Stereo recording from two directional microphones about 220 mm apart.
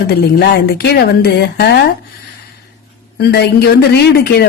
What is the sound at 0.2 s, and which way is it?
A woman's voice, 45° left (ahead or behind).